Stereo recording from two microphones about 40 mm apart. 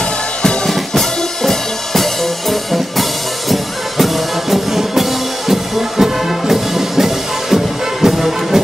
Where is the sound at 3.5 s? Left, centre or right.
Centre.